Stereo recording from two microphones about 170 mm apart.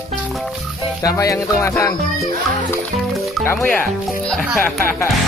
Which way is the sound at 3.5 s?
5° left (ahead or behind).